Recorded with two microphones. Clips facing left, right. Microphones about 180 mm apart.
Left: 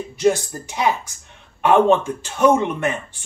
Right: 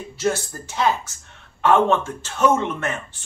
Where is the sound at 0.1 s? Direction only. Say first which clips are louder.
Left 5 dB; 15° left (ahead or behind).